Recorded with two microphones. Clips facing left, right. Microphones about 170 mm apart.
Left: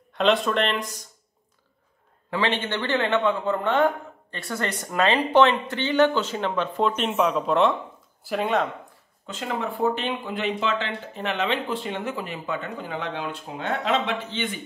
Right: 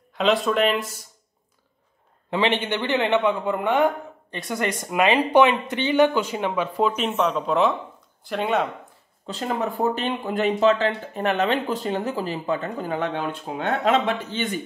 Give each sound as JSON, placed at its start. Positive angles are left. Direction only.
{"t": 0.1, "sound": "speech", "side_deg": 0}
{"t": 2.3, "sound": "a man's voice", "side_deg": -20}
{"t": 9.2, "sound": "speech", "side_deg": -35}